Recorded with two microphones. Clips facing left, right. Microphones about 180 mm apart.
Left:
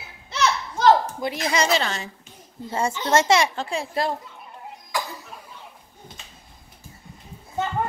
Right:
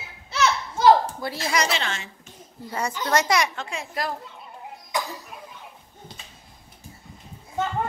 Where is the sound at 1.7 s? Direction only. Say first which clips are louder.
Left 5 dB; 40° left (ahead or behind).